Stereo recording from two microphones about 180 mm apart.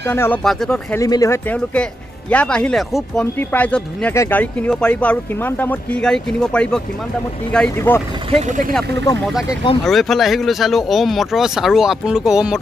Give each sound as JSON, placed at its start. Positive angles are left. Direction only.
{"t": 0.1, "sound": "speech", "side_deg": 10}
{"t": 0.9, "sound": "speech", "side_deg": 20}
{"t": 8.3, "sound": "speech", "side_deg": -40}
{"t": 9.8, "sound": "speech", "side_deg": 0}